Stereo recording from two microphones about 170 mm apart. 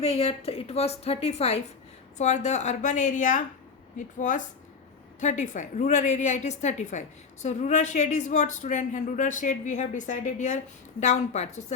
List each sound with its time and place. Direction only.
0.0 s a woman's voice: 35° left (ahead or behind)